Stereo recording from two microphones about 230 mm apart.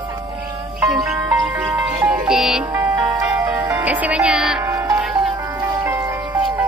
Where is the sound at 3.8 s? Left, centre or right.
Centre.